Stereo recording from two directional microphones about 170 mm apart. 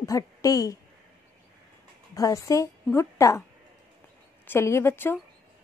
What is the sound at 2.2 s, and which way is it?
A woman's voice, 20° left (ahead or behind).